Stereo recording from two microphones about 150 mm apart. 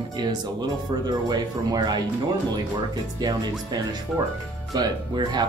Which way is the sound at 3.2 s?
30° right (ahead or behind).